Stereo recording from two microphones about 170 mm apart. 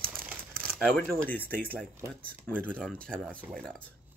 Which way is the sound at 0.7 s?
5° left (ahead or behind).